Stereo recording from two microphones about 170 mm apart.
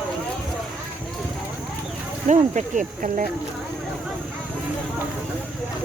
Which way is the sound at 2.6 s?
50° right (ahead or behind).